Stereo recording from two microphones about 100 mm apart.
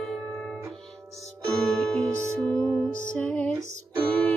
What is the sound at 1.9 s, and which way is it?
Music, 10° left (ahead or behind).